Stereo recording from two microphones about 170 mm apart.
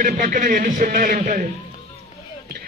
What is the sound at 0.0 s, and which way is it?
A man's voice, 55° right (ahead or behind).